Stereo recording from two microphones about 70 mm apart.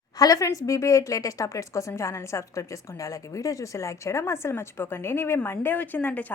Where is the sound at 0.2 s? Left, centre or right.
Left.